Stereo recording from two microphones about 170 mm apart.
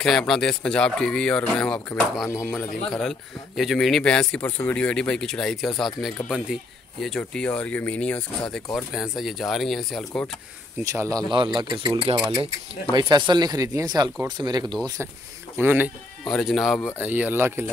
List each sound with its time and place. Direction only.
0.0 s a man's voice: 5° left (ahead or behind)
2.2 s speech: 15° left (ahead or behind)
2.5 s a man's voice: 5° left (ahead or behind)
10.8 s speech: 20° right (ahead or behind)
15.5 s speech: 10° right (ahead or behind)
16.3 s a man's voice: centre (ahead or behind)
17.0 s speech: 10° right (ahead or behind)